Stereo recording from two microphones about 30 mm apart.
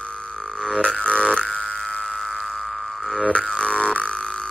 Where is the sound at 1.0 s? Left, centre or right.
Left.